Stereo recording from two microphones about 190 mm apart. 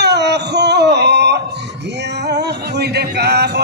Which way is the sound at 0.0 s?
65° right (ahead or behind).